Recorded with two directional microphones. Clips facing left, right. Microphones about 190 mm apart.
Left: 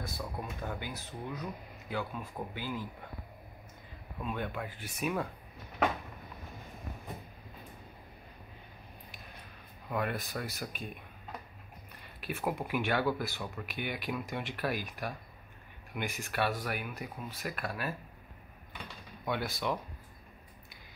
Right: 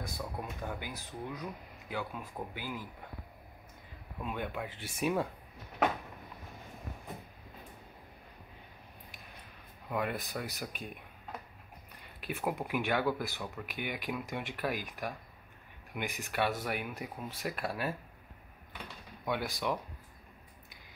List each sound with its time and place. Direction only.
0.0 s speech: 10° right (ahead or behind)
4.2 s speech: 15° right (ahead or behind)
4.7 s speech: 25° right (ahead or behind)
9.8 s speech: 15° right (ahead or behind)
12.2 s speech: 15° right (ahead or behind)
19.2 s speech: 15° right (ahead or behind)